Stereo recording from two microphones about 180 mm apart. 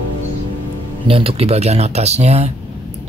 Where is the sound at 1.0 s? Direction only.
30° right (ahead or behind).